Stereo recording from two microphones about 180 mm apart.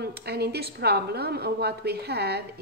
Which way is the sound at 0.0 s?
65° right (ahead or behind).